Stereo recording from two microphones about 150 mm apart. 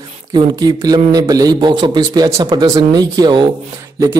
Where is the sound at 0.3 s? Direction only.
30° right (ahead or behind).